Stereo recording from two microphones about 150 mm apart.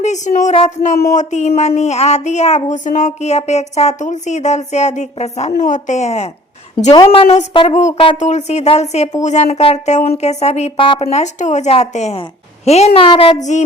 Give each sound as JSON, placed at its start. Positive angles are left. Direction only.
{"t": 0.0, "sound": "speech", "side_deg": 50}
{"t": 0.5, "sound": "a woman's voice", "side_deg": 40}
{"t": 1.1, "sound": "speech", "side_deg": 50}
{"t": 6.9, "sound": "a woman's voice", "side_deg": 25}
{"t": 7.2, "sound": "a woman's voice", "side_deg": 40}
{"t": 13.3, "sound": "speech", "side_deg": 50}